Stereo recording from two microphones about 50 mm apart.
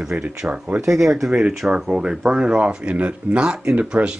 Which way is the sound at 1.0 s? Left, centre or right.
Centre.